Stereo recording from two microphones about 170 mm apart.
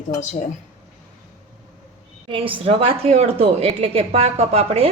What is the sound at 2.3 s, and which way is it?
A woman's voice, 30° right (ahead or behind).